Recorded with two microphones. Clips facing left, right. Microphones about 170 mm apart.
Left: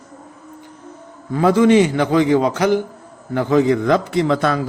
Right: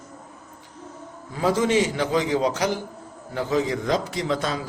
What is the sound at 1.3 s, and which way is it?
A man's voice, 60° left (ahead or behind).